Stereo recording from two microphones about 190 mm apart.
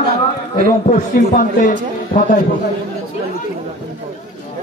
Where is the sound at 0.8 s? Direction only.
40° left (ahead or behind).